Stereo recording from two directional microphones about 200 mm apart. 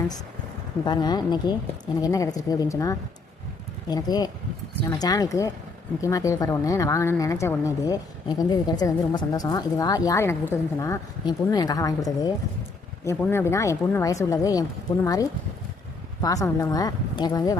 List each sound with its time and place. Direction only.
0.9 s a woman's voice: 20° left (ahead or behind)